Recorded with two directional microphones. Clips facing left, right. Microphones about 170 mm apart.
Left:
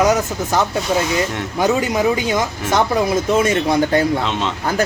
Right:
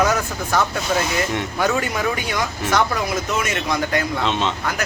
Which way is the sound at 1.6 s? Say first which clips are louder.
Left 6 dB; 20° left (ahead or behind).